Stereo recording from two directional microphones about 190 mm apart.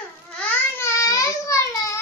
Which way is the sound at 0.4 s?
15° left (ahead or behind).